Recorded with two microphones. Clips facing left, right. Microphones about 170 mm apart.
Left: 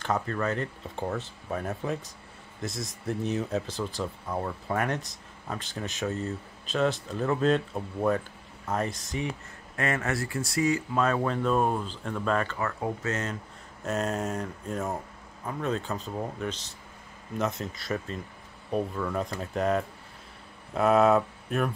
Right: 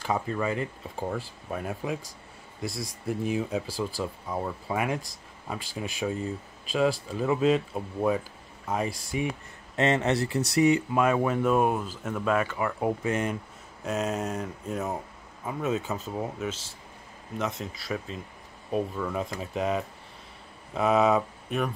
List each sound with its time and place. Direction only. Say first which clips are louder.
0.0 s speech: even; 5° right (ahead or behind)
9.8 s speech: right 5 dB; 20° right (ahead or behind)
13.8 s speech: even; centre (ahead or behind)